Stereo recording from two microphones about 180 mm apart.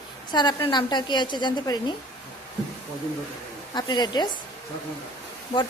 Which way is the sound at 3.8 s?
25° left (ahead or behind).